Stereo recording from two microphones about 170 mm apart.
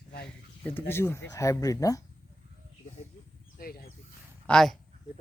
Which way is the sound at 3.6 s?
65° left (ahead or behind).